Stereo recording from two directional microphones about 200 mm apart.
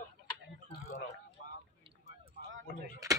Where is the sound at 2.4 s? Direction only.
55° left (ahead or behind).